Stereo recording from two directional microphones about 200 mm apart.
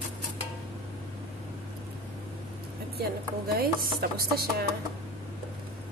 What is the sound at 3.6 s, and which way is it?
Chopping, 50° right (ahead or behind).